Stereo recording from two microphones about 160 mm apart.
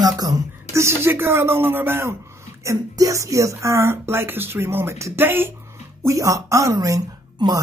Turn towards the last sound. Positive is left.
turn(degrees=-25)  # may be behind; listen again after turning